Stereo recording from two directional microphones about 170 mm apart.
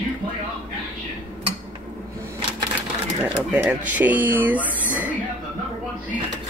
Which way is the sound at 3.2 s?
10° right (ahead or behind).